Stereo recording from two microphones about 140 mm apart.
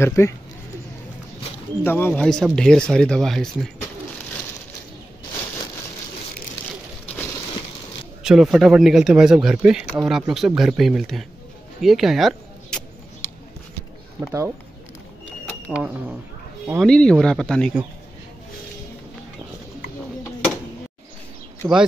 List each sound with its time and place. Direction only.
0.0 s speech: 20° left (ahead or behind)
1.8 s speech: 15° left (ahead or behind)
8.2 s speech: 5° right (ahead or behind)
14.2 s speech: 20° right (ahead or behind)
15.7 s speech: 10° right (ahead or behind)
16.8 s speech: 5° left (ahead or behind)
21.6 s speech: 25° right (ahead or behind)